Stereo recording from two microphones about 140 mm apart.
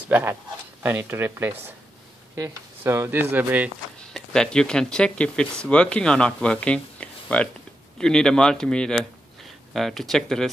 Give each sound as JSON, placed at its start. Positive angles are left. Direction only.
{"t": 0.1, "sound": "speech", "side_deg": -15}
{"t": 4.1, "sound": "speech", "side_deg": 5}